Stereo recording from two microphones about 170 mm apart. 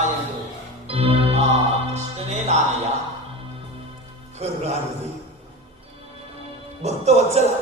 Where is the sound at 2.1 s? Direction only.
40° right (ahead or behind).